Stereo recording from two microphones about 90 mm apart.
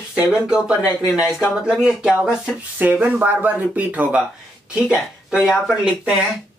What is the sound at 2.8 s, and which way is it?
Speech, 20° right (ahead or behind).